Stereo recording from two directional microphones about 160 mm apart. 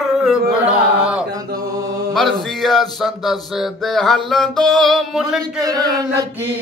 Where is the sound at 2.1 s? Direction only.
Centre (ahead or behind).